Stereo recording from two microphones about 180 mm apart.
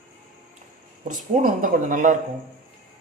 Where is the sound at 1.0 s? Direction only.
45° right (ahead or behind).